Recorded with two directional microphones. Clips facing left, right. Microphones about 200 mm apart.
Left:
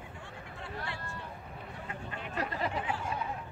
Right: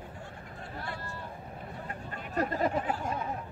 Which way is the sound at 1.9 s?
40° right (ahead or behind).